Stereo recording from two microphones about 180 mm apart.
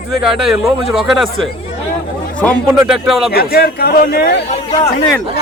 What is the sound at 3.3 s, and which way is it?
A man's voice, 60° left (ahead or behind).